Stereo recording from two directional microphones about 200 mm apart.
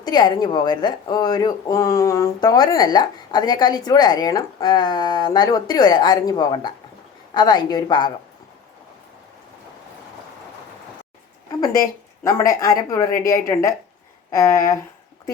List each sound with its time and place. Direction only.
0.0 s speech: 20° left (ahead or behind)
11.6 s speech: 15° left (ahead or behind)